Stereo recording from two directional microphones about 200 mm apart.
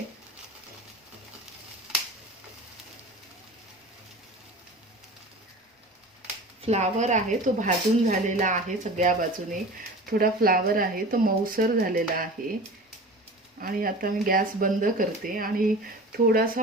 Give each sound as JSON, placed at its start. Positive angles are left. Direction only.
{"t": 6.6, "sound": "speech", "side_deg": -35}
{"t": 13.6, "sound": "speech", "side_deg": -45}